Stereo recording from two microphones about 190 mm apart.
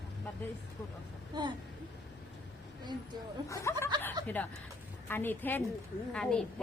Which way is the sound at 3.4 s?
15° left (ahead or behind).